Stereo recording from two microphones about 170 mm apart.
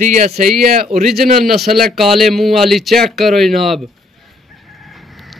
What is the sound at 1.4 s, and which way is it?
A man's voice, centre (ahead or behind).